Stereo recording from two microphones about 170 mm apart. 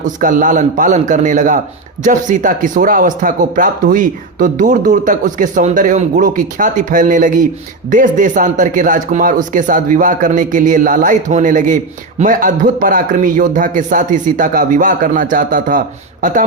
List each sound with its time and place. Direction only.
0.0 s speech: 50° right (ahead or behind)